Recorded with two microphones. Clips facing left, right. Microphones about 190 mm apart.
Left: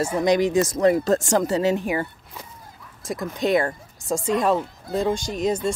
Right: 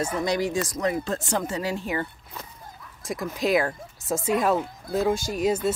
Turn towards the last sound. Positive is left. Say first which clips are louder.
# even
turn(degrees=-5)  # may be behind; listen again after turning